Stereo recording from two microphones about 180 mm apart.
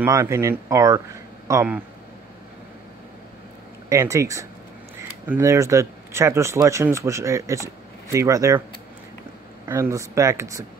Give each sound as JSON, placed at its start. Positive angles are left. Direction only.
{"t": 0.0, "sound": "speech", "side_deg": -15}
{"t": 3.9, "sound": "speech", "side_deg": -15}
{"t": 9.7, "sound": "speech", "side_deg": -15}